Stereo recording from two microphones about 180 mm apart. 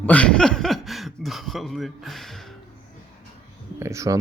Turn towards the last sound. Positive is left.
turn(degrees=-15)  # may be behind; listen again after turning